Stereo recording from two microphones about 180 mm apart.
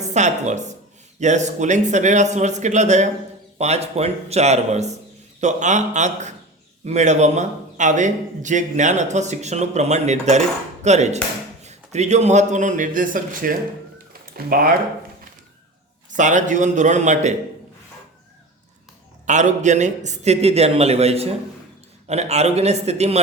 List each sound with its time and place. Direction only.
0.0 s a woman's voice: 40° right (ahead or behind)
14.1 s a sound: 55° right (ahead or behind)
16.1 s a man's voice: 45° right (ahead or behind)
19.2 s a man's voice: 40° right (ahead or behind)